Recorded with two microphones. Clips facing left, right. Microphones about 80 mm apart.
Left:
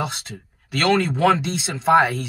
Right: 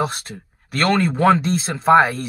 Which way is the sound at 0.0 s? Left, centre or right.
Right.